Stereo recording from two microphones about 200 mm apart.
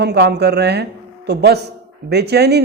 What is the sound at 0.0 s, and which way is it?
Speech, 55° right (ahead or behind).